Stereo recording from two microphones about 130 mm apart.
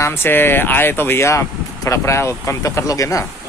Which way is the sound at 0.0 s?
20° left (ahead or behind).